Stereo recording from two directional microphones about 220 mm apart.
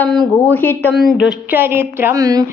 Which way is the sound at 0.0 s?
Centre (ahead or behind).